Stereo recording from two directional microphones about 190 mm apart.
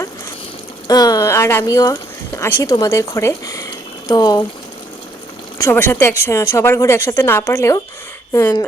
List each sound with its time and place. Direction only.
0.9 s a woman's voice: 20° left (ahead or behind)
5.5 s a woman's voice: 15° left (ahead or behind)